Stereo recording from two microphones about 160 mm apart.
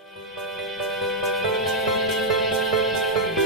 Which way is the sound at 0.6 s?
Centre (ahead or behind).